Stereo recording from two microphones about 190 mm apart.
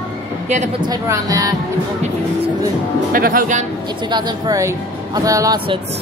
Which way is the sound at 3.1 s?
50° right (ahead or behind).